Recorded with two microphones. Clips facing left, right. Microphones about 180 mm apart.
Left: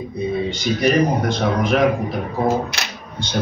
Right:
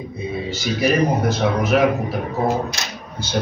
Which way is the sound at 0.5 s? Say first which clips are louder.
Right 1 dB; 5° right (ahead or behind).